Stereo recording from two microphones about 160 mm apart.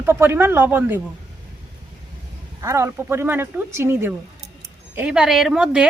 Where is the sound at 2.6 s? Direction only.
20° right (ahead or behind).